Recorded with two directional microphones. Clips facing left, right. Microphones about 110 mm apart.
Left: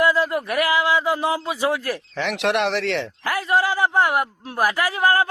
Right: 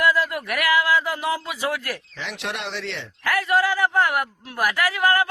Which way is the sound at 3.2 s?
25° left (ahead or behind).